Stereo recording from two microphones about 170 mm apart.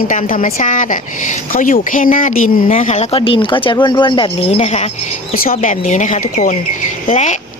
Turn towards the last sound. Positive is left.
turn(degrees=45)  # may be behind; listen again after turning